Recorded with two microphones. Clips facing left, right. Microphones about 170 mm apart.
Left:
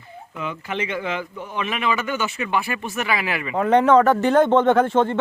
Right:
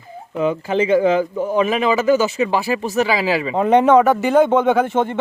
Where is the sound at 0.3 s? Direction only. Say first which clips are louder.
Right 10 dB; 35° right (ahead or behind).